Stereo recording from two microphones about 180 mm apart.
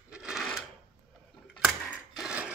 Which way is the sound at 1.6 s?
Centre (ahead or behind).